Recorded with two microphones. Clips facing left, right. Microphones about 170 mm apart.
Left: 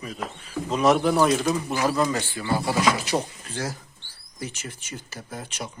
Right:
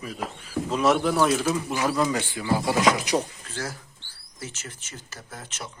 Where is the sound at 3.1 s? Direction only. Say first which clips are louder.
Even; 15° left (ahead or behind).